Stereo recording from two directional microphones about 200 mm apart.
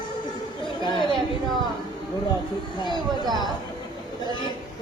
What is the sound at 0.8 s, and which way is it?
Chatter, 25° left (ahead or behind).